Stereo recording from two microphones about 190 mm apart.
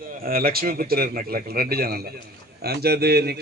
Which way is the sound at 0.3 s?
50° right (ahead or behind).